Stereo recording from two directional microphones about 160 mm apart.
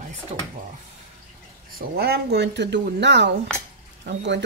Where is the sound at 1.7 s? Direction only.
75° right (ahead or behind).